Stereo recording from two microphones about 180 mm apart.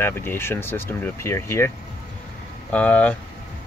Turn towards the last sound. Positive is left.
turn(degrees=10)  # may be behind; listen again after turning